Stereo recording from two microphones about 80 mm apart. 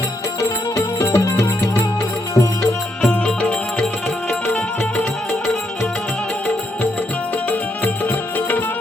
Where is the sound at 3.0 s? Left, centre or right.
Centre.